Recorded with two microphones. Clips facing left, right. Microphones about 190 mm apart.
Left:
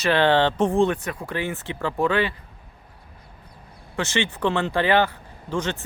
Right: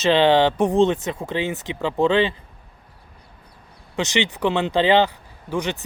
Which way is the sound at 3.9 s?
20° right (ahead or behind).